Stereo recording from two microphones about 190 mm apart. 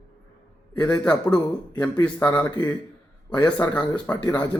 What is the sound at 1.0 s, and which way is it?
Speech, 5° left (ahead or behind).